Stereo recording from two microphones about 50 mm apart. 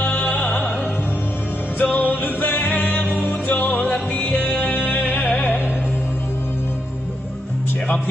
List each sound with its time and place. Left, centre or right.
0.0 s music: left
1.8 s music: left